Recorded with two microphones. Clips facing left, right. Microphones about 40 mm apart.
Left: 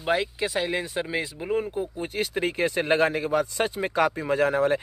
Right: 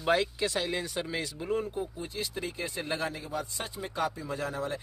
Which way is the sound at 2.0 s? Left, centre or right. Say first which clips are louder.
Left 9 dB; left.